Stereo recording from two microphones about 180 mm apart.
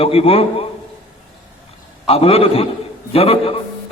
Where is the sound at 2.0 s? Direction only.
35° left (ahead or behind).